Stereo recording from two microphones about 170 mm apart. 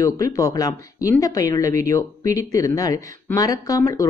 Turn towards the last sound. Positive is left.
turn(degrees=20)  # may be behind; listen again after turning